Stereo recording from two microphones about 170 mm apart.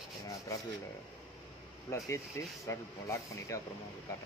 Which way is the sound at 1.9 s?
15° left (ahead or behind).